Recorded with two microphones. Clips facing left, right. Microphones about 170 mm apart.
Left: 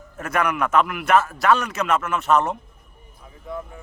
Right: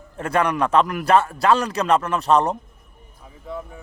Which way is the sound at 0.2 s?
30° right (ahead or behind).